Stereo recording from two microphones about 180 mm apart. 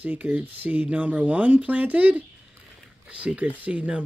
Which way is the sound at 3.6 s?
5° right (ahead or behind).